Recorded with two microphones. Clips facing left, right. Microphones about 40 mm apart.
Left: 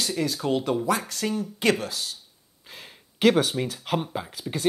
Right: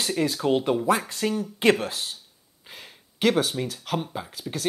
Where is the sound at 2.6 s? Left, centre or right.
Centre.